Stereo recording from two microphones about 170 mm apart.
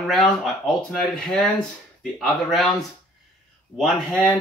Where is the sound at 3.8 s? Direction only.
10° left (ahead or behind).